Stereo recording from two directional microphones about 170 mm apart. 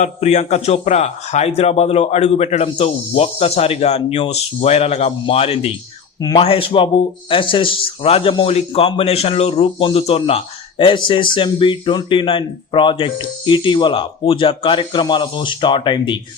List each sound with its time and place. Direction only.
0.0 s speech: 40° left (ahead or behind)
6.1 s speech: 20° left (ahead or behind)
6.4 s speech: 35° left (ahead or behind)